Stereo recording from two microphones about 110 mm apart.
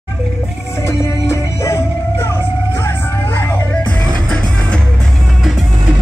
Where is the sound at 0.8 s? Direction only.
25° left (ahead or behind).